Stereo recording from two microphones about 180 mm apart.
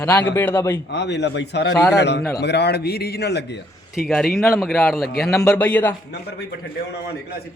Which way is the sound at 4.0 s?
5° left (ahead or behind).